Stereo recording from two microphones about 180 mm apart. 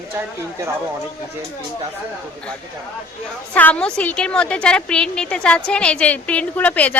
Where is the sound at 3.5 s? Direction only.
5° left (ahead or behind).